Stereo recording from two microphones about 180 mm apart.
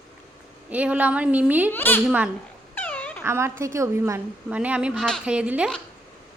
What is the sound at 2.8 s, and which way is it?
Dog, 10° left (ahead or behind).